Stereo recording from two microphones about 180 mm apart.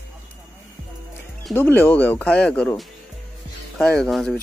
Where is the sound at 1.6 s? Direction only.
10° left (ahead or behind).